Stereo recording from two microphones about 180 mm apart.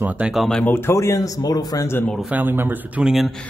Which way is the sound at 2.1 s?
5° right (ahead or behind).